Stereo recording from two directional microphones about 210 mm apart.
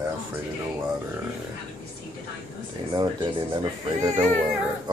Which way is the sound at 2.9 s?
20° right (ahead or behind).